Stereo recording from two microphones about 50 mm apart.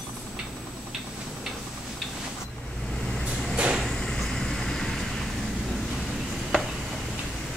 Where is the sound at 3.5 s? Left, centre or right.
Right.